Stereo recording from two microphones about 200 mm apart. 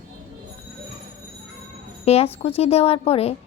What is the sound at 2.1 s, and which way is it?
Speech, 30° left (ahead or behind).